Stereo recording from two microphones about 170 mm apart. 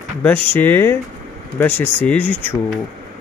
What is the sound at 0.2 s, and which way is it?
Speech, 10° left (ahead or behind).